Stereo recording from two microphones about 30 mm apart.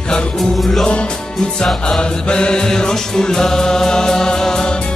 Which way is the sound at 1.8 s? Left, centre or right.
Left.